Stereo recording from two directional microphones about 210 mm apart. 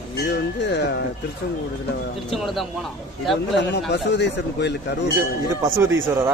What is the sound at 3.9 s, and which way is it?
Speech, 55° left (ahead or behind).